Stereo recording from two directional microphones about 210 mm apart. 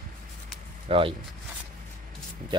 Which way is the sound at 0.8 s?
25° right (ahead or behind).